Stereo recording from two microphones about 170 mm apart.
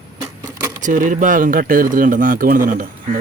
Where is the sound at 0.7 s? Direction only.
50° right (ahead or behind).